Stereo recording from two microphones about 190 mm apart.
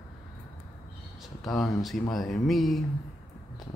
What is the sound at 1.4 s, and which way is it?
Speech, centre (ahead or behind).